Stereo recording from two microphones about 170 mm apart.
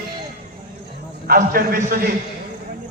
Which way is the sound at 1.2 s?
60° right (ahead or behind).